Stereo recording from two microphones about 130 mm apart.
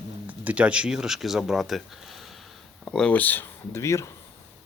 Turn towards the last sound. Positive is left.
turn(degrees=20)  # may be behind; listen again after turning